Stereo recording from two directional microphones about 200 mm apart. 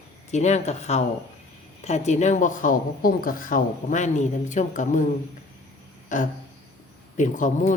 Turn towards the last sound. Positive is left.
turn(degrees=40)  # may be behind; listen again after turning